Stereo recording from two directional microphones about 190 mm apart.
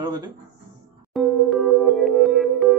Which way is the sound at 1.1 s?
Centre (ahead or behind).